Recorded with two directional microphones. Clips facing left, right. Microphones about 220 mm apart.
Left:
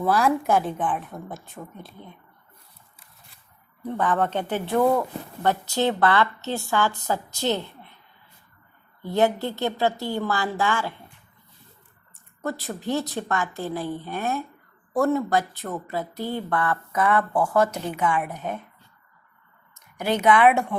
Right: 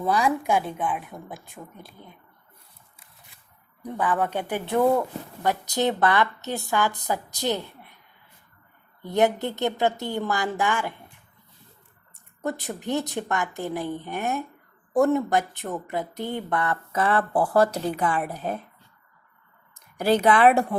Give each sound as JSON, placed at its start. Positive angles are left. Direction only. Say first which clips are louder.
{"t": 0.0, "sound": "a woman's voice", "louder": "left 2 dB", "side_deg": 0}
{"t": 0.8, "sound": "speech", "louder": "left 1 dB", "side_deg": -10}
{"t": 3.8, "sound": "speech", "louder": "left 2 dB", "side_deg": -10}
{"t": 9.0, "sound": "speech", "louder": "even", "side_deg": -20}
{"t": 12.4, "sound": "speech", "louder": "even", "side_deg": -20}
{"t": 20.0, "sound": "speech", "louder": "right 1 dB", "side_deg": -35}